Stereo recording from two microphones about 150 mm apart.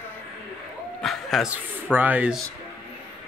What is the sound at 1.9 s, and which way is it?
Speech, 10° right (ahead or behind).